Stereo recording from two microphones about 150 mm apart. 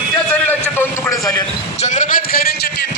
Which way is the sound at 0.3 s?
10° left (ahead or behind).